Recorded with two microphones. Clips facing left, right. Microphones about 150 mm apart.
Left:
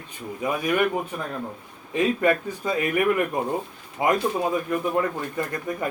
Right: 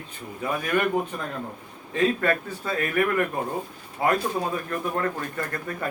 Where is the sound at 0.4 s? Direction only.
10° left (ahead or behind).